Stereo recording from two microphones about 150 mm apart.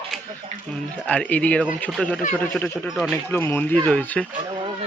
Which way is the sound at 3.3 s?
10° left (ahead or behind).